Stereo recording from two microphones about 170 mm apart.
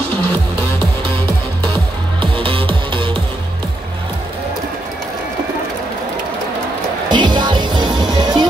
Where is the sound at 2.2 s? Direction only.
30° right (ahead or behind).